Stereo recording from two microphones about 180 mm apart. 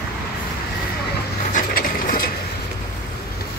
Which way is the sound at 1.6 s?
50° left (ahead or behind).